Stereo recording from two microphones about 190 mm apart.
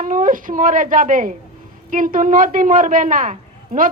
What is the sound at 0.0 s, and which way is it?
A woman's voice, 45° right (ahead or behind).